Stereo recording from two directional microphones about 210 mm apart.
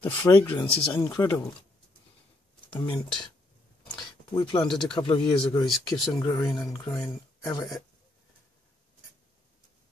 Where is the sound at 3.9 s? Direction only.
20° left (ahead or behind).